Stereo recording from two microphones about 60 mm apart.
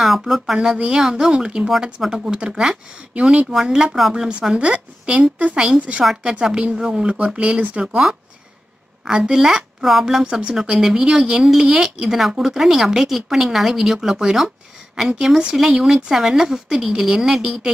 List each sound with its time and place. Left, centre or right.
0.0 s speech: centre
9.0 s speech: centre